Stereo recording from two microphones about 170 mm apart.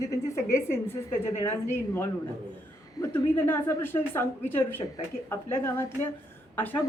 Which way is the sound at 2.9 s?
15° left (ahead or behind).